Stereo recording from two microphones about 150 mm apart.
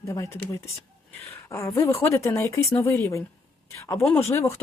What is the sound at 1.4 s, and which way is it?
Speech, 20° left (ahead or behind).